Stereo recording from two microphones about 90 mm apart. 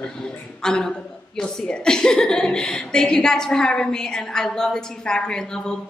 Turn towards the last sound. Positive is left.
turn(degrees=10)  # may be behind; listen again after turning